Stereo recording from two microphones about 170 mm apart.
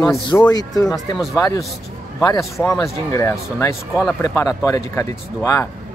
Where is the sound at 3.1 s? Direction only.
20° left (ahead or behind).